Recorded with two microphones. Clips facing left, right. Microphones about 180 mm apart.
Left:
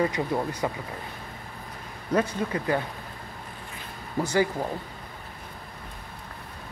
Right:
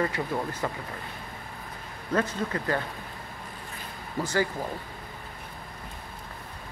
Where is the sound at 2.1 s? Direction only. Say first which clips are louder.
Left 2 dB; 15° left (ahead or behind).